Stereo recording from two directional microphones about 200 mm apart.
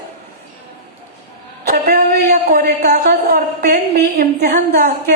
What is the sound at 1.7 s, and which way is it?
A woman's voice, 45° right (ahead or behind).